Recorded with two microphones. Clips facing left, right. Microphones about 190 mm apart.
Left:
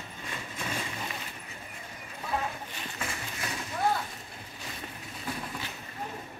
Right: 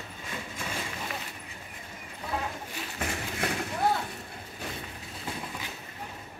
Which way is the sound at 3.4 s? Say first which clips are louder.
Right 7 dB; 65° right (ahead or behind).